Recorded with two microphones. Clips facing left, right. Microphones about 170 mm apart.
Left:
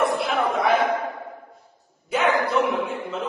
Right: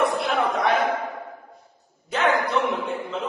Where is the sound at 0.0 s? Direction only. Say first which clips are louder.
Even; centre (ahead or behind).